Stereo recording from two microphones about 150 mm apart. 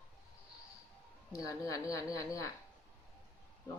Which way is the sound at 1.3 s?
20° left (ahead or behind).